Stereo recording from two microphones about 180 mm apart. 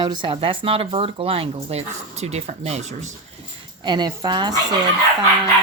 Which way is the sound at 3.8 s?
25° right (ahead or behind).